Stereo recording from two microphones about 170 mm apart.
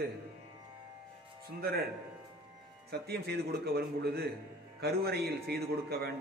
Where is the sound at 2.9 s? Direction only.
70° right (ahead or behind).